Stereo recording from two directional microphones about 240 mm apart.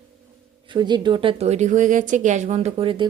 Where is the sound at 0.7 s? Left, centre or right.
Centre.